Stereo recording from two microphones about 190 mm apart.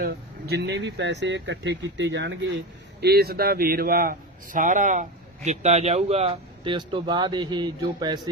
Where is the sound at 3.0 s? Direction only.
55° right (ahead or behind); by 8.1 s 25° right (ahead or behind).